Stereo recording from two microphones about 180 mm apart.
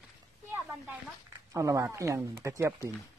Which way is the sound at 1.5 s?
20° right (ahead or behind).